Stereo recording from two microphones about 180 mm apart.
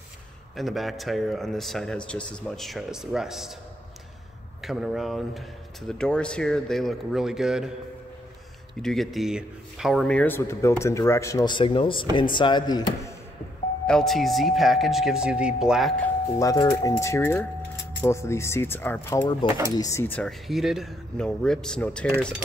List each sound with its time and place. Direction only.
0.6 s speech: centre (ahead or behind)
4.6 s speech: centre (ahead or behind)
8.8 s speech: centre (ahead or behind); by 13.1 s 20° left (ahead or behind)
13.8 s speech: centre (ahead or behind)
16.3 s speech: 20° left (ahead or behind)